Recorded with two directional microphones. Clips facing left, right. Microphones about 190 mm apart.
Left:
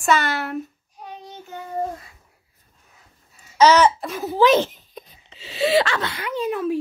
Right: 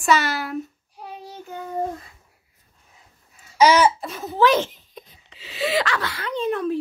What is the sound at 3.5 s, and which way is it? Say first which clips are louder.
Babbling: left 1 dB; 10° right (ahead or behind).